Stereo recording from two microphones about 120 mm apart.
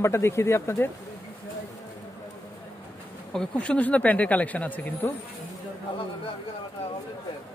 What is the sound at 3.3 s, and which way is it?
Speech, 5° left (ahead or behind).